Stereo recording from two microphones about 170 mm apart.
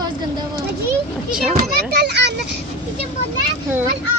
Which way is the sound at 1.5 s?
65° right (ahead or behind).